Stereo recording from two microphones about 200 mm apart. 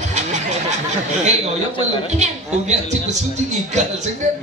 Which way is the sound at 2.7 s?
35° right (ahead or behind).